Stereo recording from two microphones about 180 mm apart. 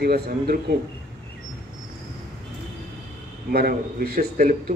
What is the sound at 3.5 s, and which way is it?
A man's voice, 60° right (ahead or behind).